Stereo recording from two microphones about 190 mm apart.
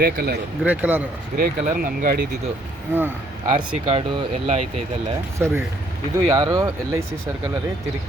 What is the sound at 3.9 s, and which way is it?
Speech, 30° right (ahead or behind).